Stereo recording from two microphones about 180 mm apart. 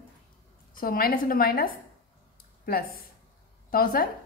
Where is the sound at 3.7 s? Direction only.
55° left (ahead or behind).